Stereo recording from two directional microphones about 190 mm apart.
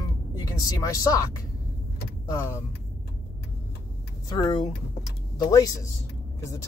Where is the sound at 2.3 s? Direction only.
15° left (ahead or behind).